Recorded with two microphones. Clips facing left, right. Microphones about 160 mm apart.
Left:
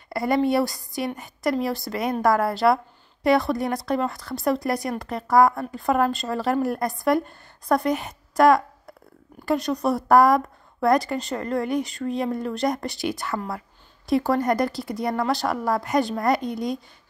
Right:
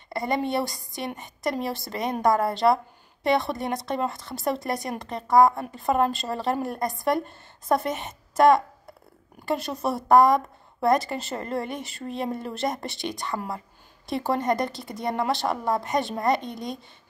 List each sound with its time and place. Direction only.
0.1 s a woman's voice: centre (ahead or behind)
13.3 s speech: 20° right (ahead or behind)
14.0 s a woman's voice: centre (ahead or behind)